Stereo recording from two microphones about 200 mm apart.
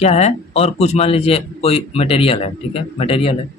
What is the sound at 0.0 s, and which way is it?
A man's voice, 35° left (ahead or behind).